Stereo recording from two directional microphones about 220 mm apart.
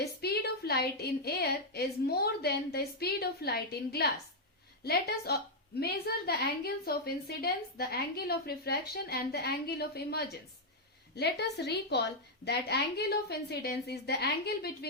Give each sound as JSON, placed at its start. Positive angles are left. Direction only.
{"t": 0.0, "sound": "a woman's voice", "side_deg": 45}